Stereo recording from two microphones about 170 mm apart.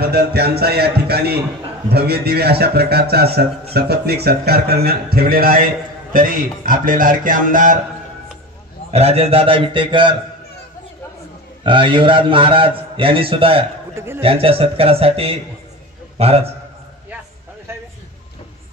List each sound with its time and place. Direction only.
0.0 s a man's voice: 70° right (ahead or behind); by 7.8 s 50° right (ahead or behind)
8.9 s a man's voice: 35° right (ahead or behind)
11.6 s a man's voice: 30° right (ahead or behind)
13.9 s a man's voice: 15° right (ahead or behind)
14.2 s a man's voice: 35° right (ahead or behind)